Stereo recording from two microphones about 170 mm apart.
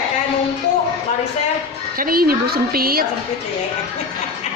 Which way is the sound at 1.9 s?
60° right (ahead or behind).